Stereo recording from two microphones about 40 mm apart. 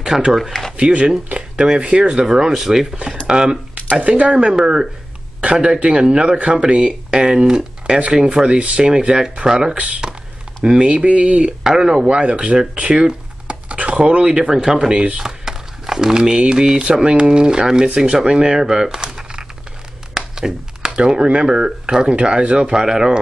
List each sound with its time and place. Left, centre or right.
0.0 s speech: centre
0.5 s a sound: centre
0.7 s speech: right
3.9 s speech: right
5.4 s speech: right
9.8 s speech: right
11.6 s speech: centre
12.2 s speech: right